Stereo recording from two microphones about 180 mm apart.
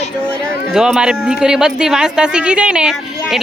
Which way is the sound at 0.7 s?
5° right (ahead or behind).